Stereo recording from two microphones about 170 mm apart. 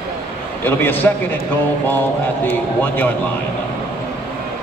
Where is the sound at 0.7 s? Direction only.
10° left (ahead or behind).